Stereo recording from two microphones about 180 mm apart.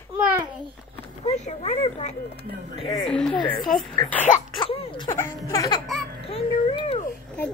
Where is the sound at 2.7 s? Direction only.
20° left (ahead or behind).